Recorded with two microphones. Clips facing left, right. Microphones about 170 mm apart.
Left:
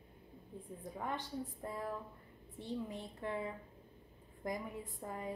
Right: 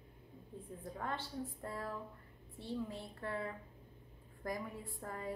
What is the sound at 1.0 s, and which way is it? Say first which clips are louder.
A woman's voice: left 1 dB; 15° left (ahead or behind).